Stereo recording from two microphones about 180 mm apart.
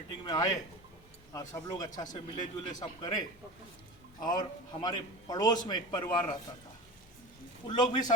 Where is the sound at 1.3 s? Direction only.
20° left (ahead or behind).